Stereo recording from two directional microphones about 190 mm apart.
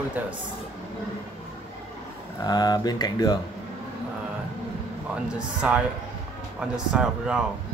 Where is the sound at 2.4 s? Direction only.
20° left (ahead or behind).